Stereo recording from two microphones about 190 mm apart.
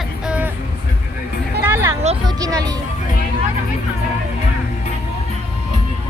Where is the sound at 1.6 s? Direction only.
10° right (ahead or behind).